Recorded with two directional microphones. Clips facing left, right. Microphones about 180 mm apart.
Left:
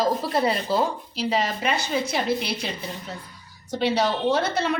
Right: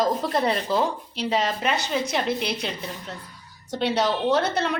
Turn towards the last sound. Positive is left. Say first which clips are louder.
# even
turn(degrees=0)  # may be behind; listen again after turning